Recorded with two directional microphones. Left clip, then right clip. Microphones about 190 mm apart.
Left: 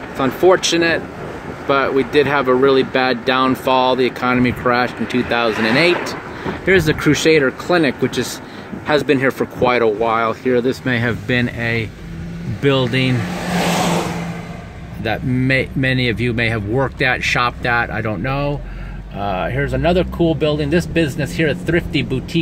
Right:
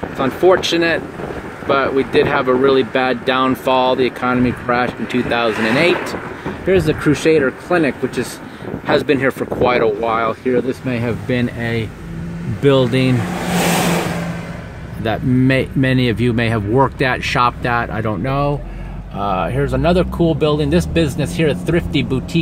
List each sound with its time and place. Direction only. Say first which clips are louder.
0.2 s speech: even; 5° left (ahead or behind)
6.7 s speech: left 1 dB; 10° left (ahead or behind)
8.8 s speech: even; centre (ahead or behind)
13.5 s vehicle: right 1 dB; 45° right (ahead or behind)
15.0 s speech: right 2 dB; 20° right (ahead or behind); by 22.4 s centre (ahead or behind)